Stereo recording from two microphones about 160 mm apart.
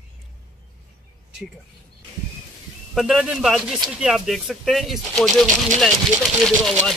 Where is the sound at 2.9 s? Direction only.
Centre (ahead or behind).